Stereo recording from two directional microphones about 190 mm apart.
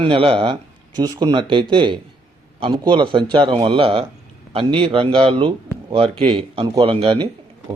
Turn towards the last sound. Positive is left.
turn(degrees=-30)  # may be behind; listen again after turning